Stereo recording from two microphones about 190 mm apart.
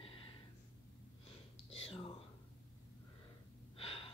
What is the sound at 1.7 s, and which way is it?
Whispering, 30° left (ahead or behind).